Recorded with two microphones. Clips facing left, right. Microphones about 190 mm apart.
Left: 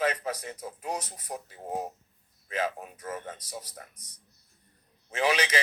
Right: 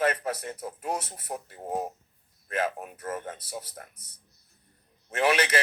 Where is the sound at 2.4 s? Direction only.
50° right (ahead or behind).